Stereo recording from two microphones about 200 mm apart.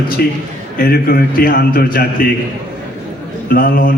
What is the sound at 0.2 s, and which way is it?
A man's voice, 50° left (ahead or behind).